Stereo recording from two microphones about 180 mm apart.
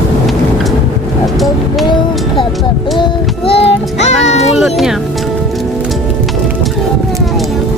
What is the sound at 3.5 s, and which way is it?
Child singing, 35° left (ahead or behind).